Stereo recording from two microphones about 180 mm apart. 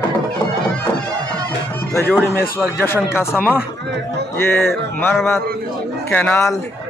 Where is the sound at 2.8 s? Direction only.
15° left (ahead or behind).